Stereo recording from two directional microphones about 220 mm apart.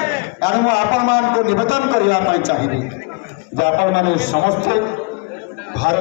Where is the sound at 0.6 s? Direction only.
55° left (ahead or behind).